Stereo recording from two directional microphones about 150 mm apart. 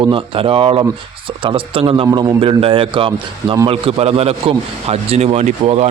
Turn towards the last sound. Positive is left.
turn(degrees=-40)  # may be behind; listen again after turning